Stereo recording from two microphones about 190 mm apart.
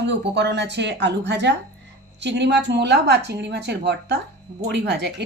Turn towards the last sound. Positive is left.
turn(degrees=-65)  # may be behind; listen again after turning